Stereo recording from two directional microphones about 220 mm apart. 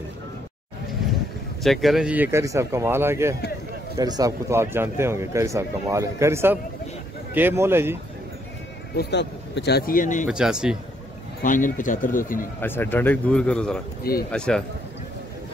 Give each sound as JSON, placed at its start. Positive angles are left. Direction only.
{"t": 1.6, "sound": "a man's voice", "side_deg": 0}
{"t": 8.9, "sound": "speech", "side_deg": 50}
{"t": 10.3, "sound": "speech", "side_deg": -5}
{"t": 11.4, "sound": "speech", "side_deg": 35}
{"t": 12.5, "sound": "a man's voice", "side_deg": 10}